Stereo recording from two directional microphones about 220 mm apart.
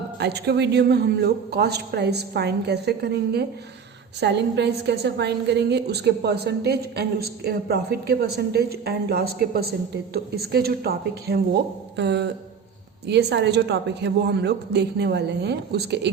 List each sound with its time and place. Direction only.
0.2 s a woman's voice: 50° right (ahead or behind)